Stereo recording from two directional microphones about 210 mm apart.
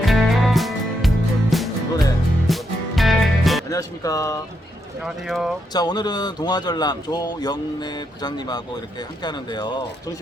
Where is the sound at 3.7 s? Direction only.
15° left (ahead or behind).